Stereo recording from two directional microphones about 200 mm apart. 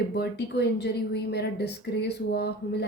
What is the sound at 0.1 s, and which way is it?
A woman's voice, 55° left (ahead or behind).